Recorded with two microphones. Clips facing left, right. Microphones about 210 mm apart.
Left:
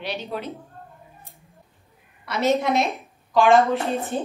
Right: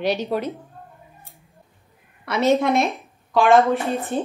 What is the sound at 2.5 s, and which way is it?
A woman's voice, centre (ahead or behind).